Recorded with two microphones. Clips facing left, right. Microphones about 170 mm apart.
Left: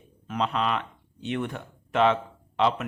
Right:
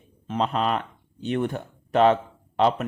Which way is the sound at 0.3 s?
35° right (ahead or behind).